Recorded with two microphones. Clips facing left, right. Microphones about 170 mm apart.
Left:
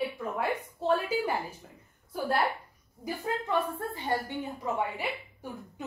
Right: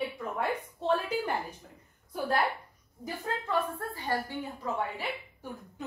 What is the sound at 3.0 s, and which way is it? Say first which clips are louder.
A woman's voice: left 3 dB; 20° left (ahead or behind).